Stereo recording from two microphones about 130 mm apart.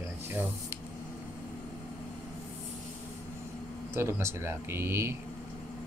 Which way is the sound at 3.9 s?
20° right (ahead or behind).